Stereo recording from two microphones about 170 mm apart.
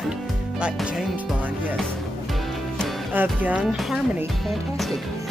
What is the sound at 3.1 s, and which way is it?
Speech, 10° right (ahead or behind).